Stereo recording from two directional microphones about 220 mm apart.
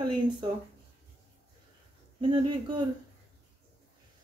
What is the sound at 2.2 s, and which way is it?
Speech, 20° right (ahead or behind).